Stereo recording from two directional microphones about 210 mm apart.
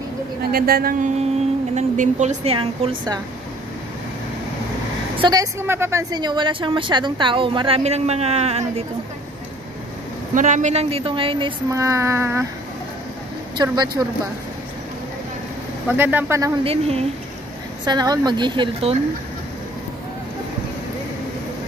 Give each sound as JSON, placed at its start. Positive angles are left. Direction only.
{"t": 0.4, "sound": "a woman's voice", "side_deg": -45}
{"t": 1.8, "sound": "a woman's voice", "side_deg": -35}
{"t": 5.2, "sound": "a woman's voice", "side_deg": -15}
{"t": 10.3, "sound": "a woman's voice", "side_deg": -35}
{"t": 13.6, "sound": "a woman's voice", "side_deg": -20}
{"t": 15.9, "sound": "speech", "side_deg": -10}
{"t": 16.6, "sound": "a woman's voice", "side_deg": -30}